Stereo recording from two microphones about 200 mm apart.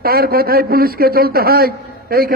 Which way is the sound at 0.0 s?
50° right (ahead or behind).